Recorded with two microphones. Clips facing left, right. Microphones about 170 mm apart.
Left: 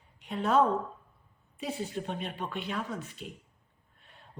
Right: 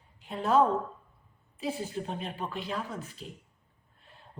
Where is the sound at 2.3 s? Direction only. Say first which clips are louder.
Right 1 dB; centre (ahead or behind).